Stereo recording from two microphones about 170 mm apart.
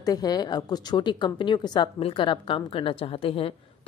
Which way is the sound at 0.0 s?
25° left (ahead or behind).